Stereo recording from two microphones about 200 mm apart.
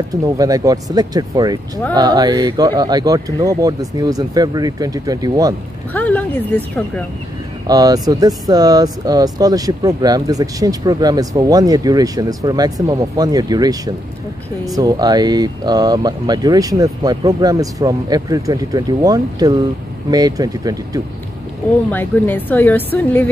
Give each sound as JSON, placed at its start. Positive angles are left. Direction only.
{"t": 0.1, "sound": "speech", "side_deg": -15}
{"t": 5.9, "sound": "a woman's voice", "side_deg": 10}
{"t": 7.6, "sound": "speech", "side_deg": -20}
{"t": 21.9, "sound": "a woman's voice", "side_deg": 10}